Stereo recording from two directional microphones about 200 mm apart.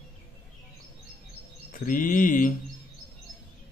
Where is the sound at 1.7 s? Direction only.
40° left (ahead or behind).